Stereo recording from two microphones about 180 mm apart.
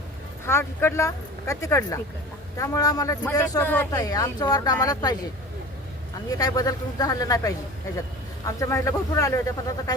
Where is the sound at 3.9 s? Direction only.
20° left (ahead or behind).